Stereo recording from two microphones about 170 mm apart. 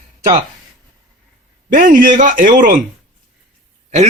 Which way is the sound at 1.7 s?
50° right (ahead or behind).